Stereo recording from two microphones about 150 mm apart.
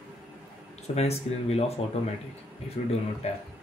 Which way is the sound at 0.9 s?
45° left (ahead or behind).